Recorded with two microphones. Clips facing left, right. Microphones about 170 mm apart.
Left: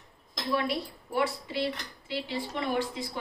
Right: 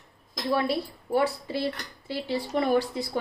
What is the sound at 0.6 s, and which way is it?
Speech, 35° right (ahead or behind).